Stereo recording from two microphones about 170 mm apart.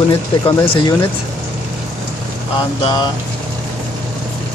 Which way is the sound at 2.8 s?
25° left (ahead or behind).